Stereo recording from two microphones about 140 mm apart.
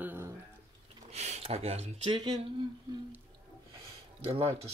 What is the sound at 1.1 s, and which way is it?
Speech, 55° right (ahead or behind).